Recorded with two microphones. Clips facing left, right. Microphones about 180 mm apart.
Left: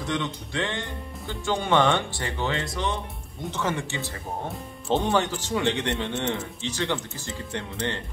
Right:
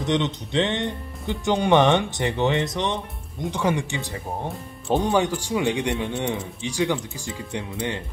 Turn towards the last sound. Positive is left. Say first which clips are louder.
# right 2 dB
turn(degrees=-10)  # may be behind; listen again after turning